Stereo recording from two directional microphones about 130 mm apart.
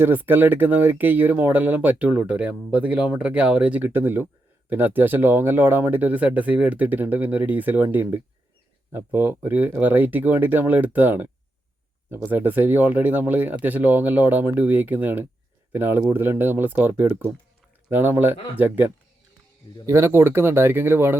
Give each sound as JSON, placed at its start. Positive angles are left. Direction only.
{"t": 0.0, "sound": "speech", "side_deg": -15}
{"t": 19.9, "sound": "speech", "side_deg": -20}